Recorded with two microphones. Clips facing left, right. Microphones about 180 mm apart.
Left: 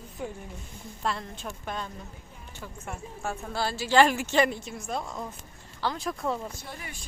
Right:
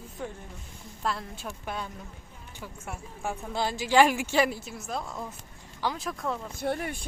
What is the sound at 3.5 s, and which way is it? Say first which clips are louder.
Speech: even; 15° right (ahead or behind).